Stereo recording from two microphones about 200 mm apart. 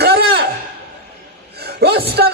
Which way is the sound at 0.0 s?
55° right (ahead or behind).